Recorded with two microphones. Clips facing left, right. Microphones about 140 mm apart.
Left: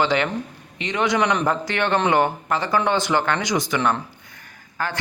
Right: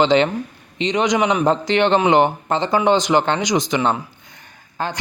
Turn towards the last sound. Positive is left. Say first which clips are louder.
# right 2 dB
turn(degrees=-20)  # may be behind; listen again after turning